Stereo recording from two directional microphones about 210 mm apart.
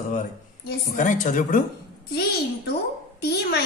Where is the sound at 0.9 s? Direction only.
40° left (ahead or behind).